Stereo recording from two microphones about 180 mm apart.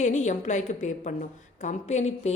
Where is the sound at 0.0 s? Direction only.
40° left (ahead or behind).